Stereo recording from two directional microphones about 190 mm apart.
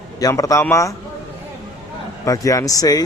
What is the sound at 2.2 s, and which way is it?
Speech, 15° left (ahead or behind).